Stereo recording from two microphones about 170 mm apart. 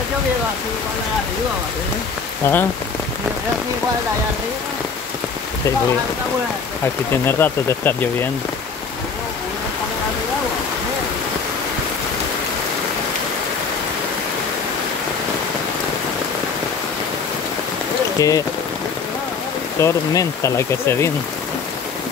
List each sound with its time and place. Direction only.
2.4 s speech: 15° left (ahead or behind)
7.2 s speech: 15° left (ahead or behind)
18.2 s speech: 20° left (ahead or behind)
19.8 s speech: 15° left (ahead or behind)